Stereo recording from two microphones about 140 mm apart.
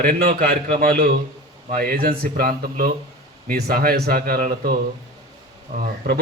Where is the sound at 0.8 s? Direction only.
90° right.